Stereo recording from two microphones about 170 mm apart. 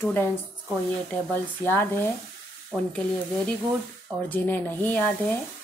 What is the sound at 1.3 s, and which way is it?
Speech, 10° left (ahead or behind).